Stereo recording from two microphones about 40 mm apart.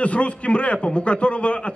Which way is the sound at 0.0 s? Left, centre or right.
Left.